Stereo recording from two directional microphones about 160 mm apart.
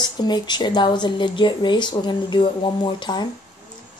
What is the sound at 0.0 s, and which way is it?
Speech, 25° left (ahead or behind).